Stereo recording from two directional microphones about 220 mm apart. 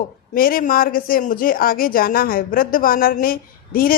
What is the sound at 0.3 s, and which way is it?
A woman's voice, 40° left (ahead or behind).